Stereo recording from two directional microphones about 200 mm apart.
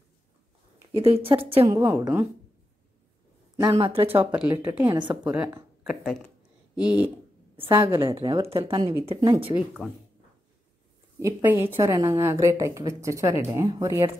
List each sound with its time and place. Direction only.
0.9 s a woman's voice: 30° right (ahead or behind)
1.7 s speech: 10° right (ahead or behind)
3.6 s a woman's voice: 20° right (ahead or behind)
4.5 s speech: 10° right (ahead or behind)
4.9 s a woman's voice: 25° right (ahead or behind)
5.2 s speech: 5° right (ahead or behind)
6.0 s a sound: 5° left (ahead or behind)
7.5 s a woman's voice: 25° right (ahead or behind)
9.8 s speech: centre (ahead or behind)
11.1 s speech: 15° right (ahead or behind)